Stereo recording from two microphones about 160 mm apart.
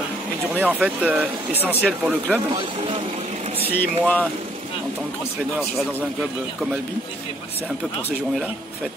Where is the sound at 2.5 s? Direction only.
35° right (ahead or behind).